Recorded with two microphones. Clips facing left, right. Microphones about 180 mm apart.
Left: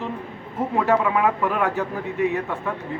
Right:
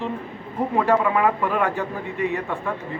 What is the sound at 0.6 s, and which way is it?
Speech, centre (ahead or behind).